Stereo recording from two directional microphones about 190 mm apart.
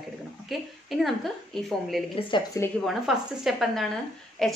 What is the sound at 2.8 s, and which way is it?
A woman's voice, centre (ahead or behind).